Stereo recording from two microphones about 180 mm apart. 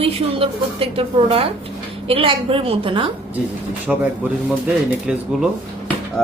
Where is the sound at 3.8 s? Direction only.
10° right (ahead or behind).